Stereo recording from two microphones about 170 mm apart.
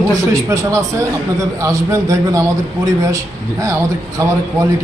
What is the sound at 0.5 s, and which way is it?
A man's voice, 15° right (ahead or behind).